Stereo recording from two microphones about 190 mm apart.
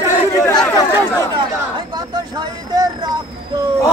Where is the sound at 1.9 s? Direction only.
20° right (ahead or behind).